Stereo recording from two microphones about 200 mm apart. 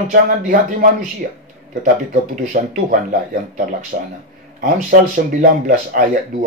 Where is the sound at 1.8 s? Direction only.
40° right (ahead or behind).